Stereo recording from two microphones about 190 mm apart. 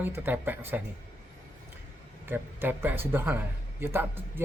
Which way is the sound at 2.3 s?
10° right (ahead or behind).